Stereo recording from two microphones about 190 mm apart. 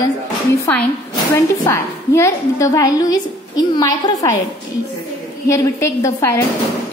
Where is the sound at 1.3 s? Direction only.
15° left (ahead or behind).